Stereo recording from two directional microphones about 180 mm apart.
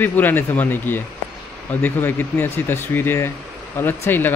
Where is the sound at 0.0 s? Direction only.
10° left (ahead or behind).